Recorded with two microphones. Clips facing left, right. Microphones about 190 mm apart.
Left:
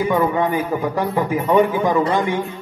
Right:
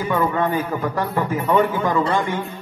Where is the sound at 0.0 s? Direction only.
15° left (ahead or behind).